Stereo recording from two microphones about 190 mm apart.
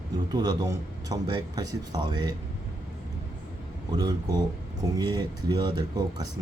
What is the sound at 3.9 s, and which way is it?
A man's voice, 20° right (ahead or behind).